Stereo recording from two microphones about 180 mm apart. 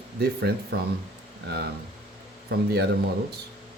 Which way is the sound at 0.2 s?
60° right (ahead or behind).